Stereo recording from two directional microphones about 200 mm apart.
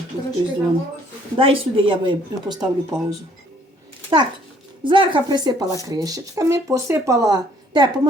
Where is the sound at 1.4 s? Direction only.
25° right (ahead or behind).